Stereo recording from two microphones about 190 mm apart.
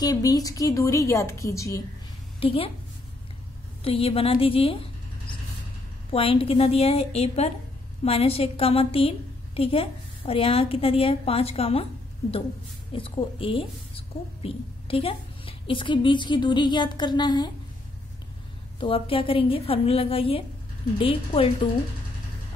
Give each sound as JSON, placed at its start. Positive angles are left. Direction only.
{"t": 0.0, "sound": "a woman's voice", "side_deg": 20}
{"t": 2.4, "sound": "a woman's voice", "side_deg": 30}
{"t": 3.8, "sound": "a woman's voice", "side_deg": 30}
{"t": 6.0, "sound": "a woman's voice", "side_deg": 30}
{"t": 18.8, "sound": "a woman's voice", "side_deg": 30}